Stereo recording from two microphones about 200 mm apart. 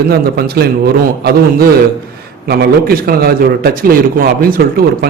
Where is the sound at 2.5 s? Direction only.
50° right (ahead or behind).